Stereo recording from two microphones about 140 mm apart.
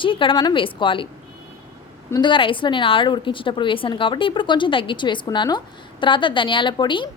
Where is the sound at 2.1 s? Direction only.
35° left (ahead or behind).